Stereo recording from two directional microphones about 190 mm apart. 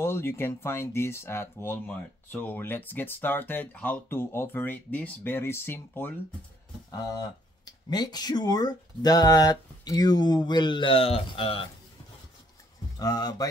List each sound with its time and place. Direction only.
0.0 s speech: 15° left (ahead or behind)
13.0 s speech: 20° left (ahead or behind)